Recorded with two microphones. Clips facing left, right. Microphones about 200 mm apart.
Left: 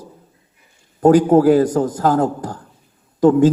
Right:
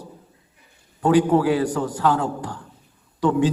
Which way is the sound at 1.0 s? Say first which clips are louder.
Left 6 dB; 45° left (ahead or behind).